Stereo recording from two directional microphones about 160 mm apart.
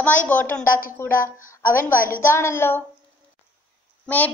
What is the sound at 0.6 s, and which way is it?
Speech, 60° left (ahead or behind).